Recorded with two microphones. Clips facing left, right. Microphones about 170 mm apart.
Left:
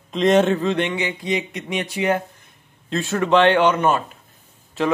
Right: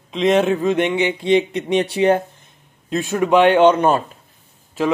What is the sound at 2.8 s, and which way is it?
Speech, 15° right (ahead or behind).